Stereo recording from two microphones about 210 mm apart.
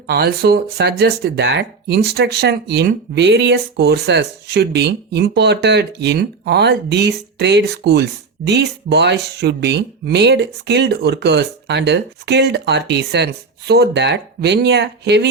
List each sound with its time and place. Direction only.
0.1 s speech: 50° right (ahead or behind)